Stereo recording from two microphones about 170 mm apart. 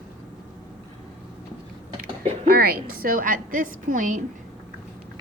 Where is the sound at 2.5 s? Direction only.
65° right (ahead or behind).